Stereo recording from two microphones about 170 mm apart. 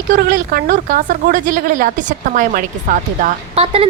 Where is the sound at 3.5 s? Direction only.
35° right (ahead or behind).